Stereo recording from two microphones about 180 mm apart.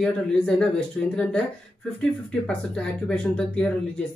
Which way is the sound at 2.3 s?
5° left (ahead or behind).